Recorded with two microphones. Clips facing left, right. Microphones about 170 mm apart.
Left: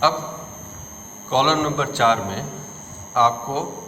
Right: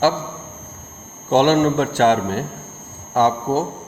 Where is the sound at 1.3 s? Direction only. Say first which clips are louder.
Right 5 dB; 50° right (ahead or behind).